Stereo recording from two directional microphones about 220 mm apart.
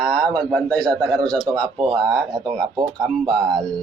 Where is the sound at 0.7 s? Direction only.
5° left (ahead or behind).